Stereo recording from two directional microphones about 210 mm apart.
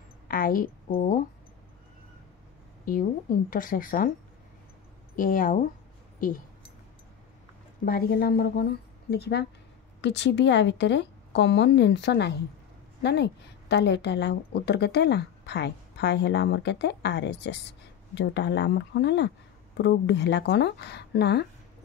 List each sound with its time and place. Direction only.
0.3 s a woman's voice: 40° left (ahead or behind)
2.8 s a woman's voice: 40° left (ahead or behind)
5.1 s a woman's voice: 40° left (ahead or behind)
7.8 s a woman's voice: 45° left (ahead or behind)